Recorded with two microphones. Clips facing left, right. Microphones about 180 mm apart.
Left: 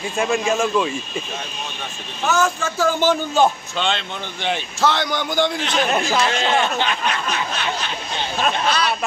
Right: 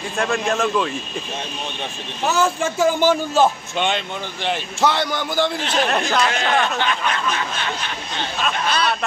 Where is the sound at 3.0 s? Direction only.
5° right (ahead or behind).